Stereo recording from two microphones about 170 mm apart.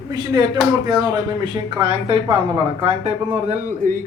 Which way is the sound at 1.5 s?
30° right (ahead or behind).